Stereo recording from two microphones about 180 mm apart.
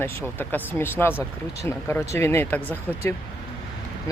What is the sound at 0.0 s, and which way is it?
Speech, 10° left (ahead or behind).